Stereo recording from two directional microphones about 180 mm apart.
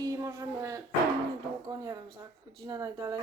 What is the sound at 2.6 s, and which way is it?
Speech, 20° right (ahead or behind).